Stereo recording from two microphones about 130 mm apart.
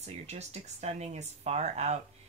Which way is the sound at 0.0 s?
55° right (ahead or behind).